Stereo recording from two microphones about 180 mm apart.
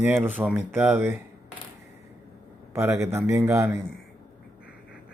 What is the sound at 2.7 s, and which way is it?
Speech, 15° right (ahead or behind).